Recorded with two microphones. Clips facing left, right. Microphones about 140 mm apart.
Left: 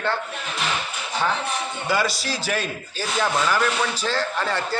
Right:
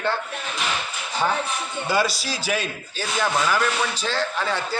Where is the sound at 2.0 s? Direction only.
5° right (ahead or behind).